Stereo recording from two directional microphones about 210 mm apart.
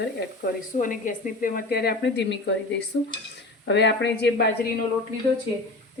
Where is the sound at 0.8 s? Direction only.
40° left (ahead or behind).